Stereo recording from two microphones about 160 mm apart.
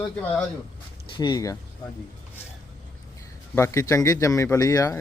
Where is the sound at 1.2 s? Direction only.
25° left (ahead or behind).